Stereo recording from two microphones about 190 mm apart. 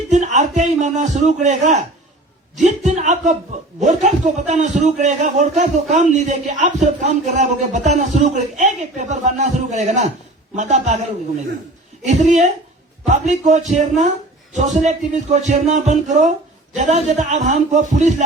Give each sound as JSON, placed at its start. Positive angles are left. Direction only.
{"t": 0.1, "sound": "a sound", "side_deg": -40}
{"t": 2.6, "sound": "a man's voice", "side_deg": -40}
{"t": 12.0, "sound": "a man's voice", "side_deg": -40}